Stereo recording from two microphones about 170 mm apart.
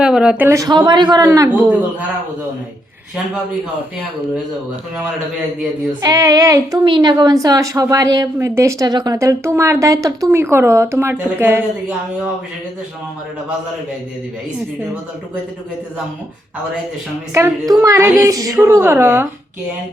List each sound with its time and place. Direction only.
0.0 s a woman's voice: 5° right (ahead or behind); by 1.5 s 20° right (ahead or behind)
6.0 s a woman's voice: 20° right (ahead or behind)
17.3 s speech: 15° right (ahead or behind)